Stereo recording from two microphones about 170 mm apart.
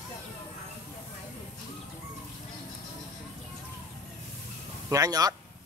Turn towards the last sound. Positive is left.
turn(degrees=-20)  # may be behind; listen again after turning